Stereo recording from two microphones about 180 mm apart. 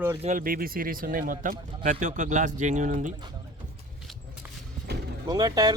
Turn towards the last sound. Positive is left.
turn(degrees=-20)  # may be behind; listen again after turning